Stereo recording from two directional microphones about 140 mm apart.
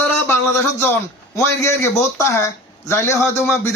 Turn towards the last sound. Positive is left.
turn(degrees=15)  # may be behind; listen again after turning